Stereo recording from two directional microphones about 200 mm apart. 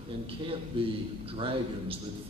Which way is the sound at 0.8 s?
25° right (ahead or behind).